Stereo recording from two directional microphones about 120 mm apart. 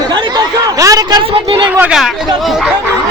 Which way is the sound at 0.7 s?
30° right (ahead or behind).